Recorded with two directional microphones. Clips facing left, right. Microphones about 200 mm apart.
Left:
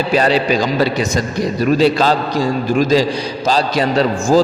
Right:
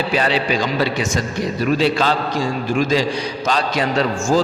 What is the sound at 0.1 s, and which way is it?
A man's voice, 40° left (ahead or behind).